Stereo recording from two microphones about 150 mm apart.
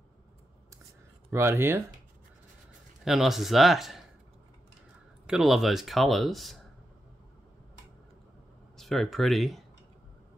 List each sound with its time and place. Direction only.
1.3 s speech: 15° right (ahead or behind)
3.1 s speech: centre (ahead or behind)
5.2 s speech: 5° right (ahead or behind)
8.7 s speech: centre (ahead or behind)